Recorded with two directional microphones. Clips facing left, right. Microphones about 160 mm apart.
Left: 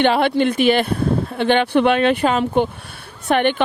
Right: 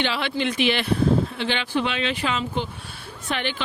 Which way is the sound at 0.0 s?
50° left (ahead or behind).